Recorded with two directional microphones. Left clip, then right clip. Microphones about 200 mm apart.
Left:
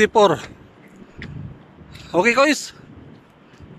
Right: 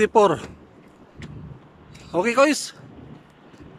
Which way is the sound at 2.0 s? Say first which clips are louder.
Left 3 dB; centre (ahead or behind).